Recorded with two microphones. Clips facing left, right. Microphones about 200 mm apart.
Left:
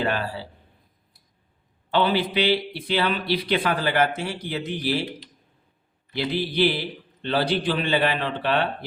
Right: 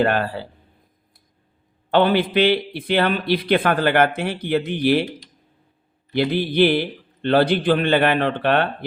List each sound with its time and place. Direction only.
0.0 s a man's voice: 55° right (ahead or behind)
1.9 s a man's voice: 55° right (ahead or behind)